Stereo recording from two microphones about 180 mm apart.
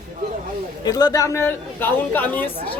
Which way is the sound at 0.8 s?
20° left (ahead or behind).